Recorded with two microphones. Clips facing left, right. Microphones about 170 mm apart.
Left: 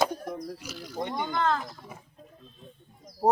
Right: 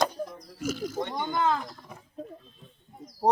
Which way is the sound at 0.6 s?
45° right (ahead or behind).